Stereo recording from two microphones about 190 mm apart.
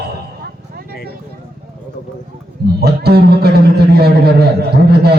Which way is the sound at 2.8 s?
55° right (ahead or behind).